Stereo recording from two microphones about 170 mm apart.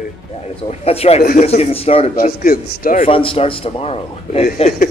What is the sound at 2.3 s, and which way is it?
Speech, 55° left (ahead or behind).